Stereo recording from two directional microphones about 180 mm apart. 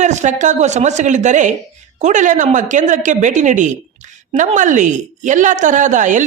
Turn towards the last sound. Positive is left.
turn(degrees=-45)  # may be behind; listen again after turning